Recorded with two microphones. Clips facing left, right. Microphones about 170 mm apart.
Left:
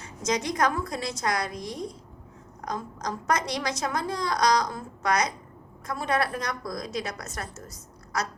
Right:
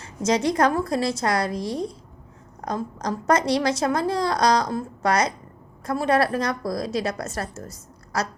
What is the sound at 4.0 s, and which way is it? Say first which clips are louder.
A woman's voice: right 5 dB; 30° right (ahead or behind).